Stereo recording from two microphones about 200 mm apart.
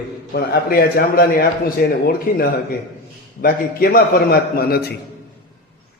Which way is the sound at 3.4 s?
50° left (ahead or behind).